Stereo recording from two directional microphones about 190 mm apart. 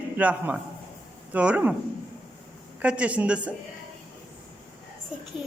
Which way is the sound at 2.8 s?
5° right (ahead or behind).